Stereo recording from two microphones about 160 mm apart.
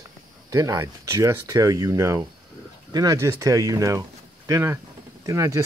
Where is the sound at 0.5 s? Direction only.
20° right (ahead or behind).